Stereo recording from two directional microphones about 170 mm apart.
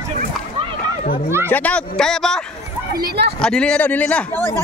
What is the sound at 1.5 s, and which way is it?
Speech, 10° left (ahead or behind).